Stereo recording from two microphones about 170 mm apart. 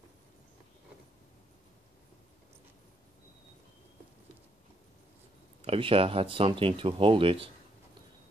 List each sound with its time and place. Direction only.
5.6 s speech: 30° right (ahead or behind)